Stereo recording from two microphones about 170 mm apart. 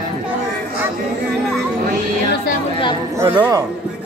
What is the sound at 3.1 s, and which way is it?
Speech, 15° right (ahead or behind).